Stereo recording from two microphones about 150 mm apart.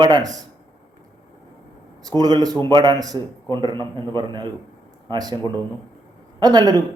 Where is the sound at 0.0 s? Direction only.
30° right (ahead or behind).